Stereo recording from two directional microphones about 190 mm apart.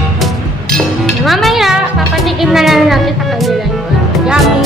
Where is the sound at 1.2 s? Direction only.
Centre (ahead or behind).